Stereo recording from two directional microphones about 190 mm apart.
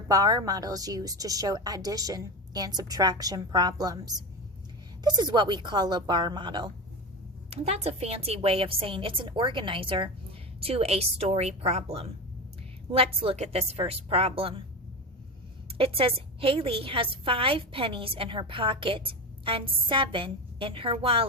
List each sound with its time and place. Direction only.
0.1 s a woman's voice: 20° right (ahead or behind)
15.8 s a woman's voice: 30° right (ahead or behind)